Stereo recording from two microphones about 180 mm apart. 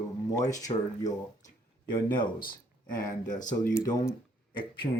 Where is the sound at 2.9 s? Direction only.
45° left (ahead or behind).